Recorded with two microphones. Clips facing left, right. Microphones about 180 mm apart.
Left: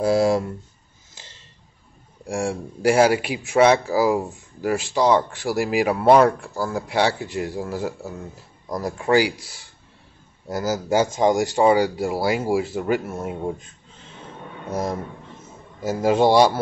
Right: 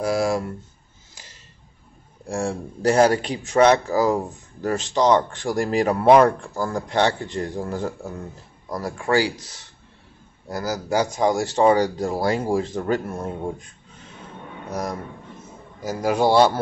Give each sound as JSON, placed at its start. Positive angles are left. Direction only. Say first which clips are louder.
{"t": 0.0, "sound": "speech", "louder": "left 3 dB", "side_deg": 20}
{"t": 1.1, "sound": "a sound", "louder": "left 1 dB", "side_deg": 25}
{"t": 2.2, "sound": "speech", "louder": "left 1 dB", "side_deg": 15}
{"t": 8.6, "sound": "speech", "louder": "left 2 dB", "side_deg": 20}
{"t": 10.5, "sound": "speech", "louder": "left 2 dB", "side_deg": 20}
{"t": 14.7, "sound": "a man's voice", "louder": "left 3 dB", "side_deg": 25}